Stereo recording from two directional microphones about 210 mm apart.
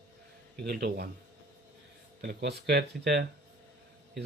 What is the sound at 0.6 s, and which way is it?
Speech, 50° right (ahead or behind).